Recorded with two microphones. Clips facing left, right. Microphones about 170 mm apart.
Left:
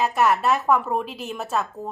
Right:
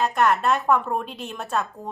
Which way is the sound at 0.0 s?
5° left (ahead or behind).